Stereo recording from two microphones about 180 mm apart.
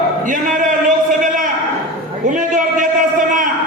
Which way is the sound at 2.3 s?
45° right (ahead or behind).